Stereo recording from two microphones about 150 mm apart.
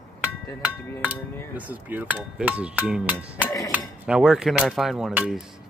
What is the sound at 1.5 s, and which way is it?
Speech, 10° right (ahead or behind).